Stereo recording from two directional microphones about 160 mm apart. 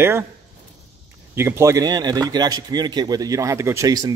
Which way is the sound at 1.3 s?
15° right (ahead or behind).